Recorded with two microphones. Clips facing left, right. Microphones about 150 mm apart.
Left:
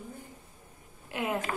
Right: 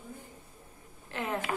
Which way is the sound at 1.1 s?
10° left (ahead or behind).